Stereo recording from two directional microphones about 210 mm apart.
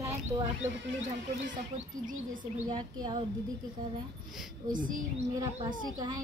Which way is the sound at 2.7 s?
20° right (ahead or behind).